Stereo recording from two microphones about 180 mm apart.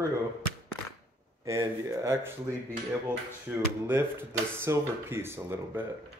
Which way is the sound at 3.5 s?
10° right (ahead or behind).